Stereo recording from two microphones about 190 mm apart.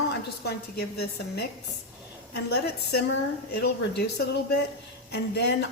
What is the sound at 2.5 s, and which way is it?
A woman's voice, 60° left (ahead or behind).